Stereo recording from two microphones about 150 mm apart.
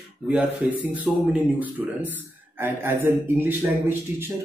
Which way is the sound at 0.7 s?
10° right (ahead or behind).